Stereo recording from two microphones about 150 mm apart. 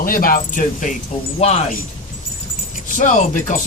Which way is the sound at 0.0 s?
65° left (ahead or behind).